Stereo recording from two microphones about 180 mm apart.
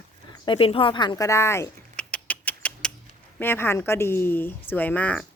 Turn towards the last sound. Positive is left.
turn(degrees=5)  # may be behind; listen again after turning